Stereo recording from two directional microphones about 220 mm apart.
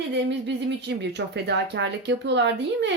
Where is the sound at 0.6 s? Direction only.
50° right (ahead or behind).